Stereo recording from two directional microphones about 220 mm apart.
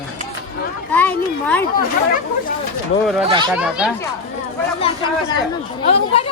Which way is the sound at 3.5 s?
5° right (ahead or behind).